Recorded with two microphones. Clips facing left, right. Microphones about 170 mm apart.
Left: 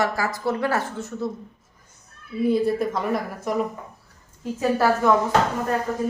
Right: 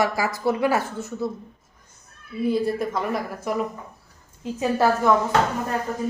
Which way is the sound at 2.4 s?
Centre (ahead or behind).